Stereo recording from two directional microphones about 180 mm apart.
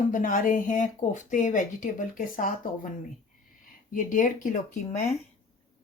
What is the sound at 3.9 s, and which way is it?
Speech, 45° left (ahead or behind).